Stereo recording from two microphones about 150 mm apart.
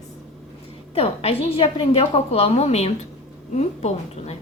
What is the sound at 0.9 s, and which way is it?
A woman's voice, 40° left (ahead or behind).